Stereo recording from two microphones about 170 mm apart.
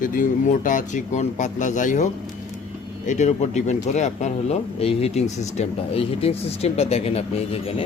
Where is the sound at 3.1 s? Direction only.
40° left (ahead or behind).